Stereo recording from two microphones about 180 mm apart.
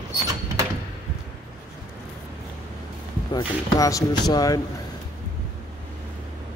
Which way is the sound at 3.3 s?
20° left (ahead or behind).